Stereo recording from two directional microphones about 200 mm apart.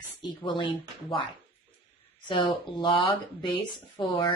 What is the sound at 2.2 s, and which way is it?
Speech, 25° left (ahead or behind).